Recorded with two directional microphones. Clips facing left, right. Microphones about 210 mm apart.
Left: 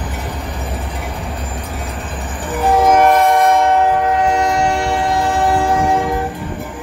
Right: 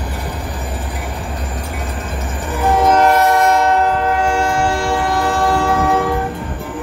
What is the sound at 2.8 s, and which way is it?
Train, 10° left (ahead or behind).